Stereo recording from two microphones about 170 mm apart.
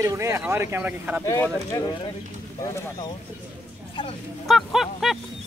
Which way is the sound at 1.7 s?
25° left (ahead or behind).